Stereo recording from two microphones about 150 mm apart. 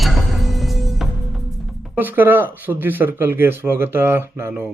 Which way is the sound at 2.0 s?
15° right (ahead or behind).